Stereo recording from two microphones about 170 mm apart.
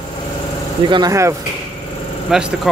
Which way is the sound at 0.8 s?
25° right (ahead or behind).